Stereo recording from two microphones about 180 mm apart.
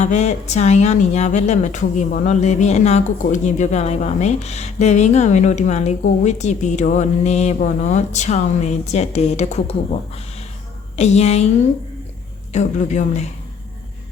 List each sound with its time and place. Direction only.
0.0 s speech: 40° left (ahead or behind)
10.9 s speech: 40° left (ahead or behind)
12.5 s speech: 40° left (ahead or behind)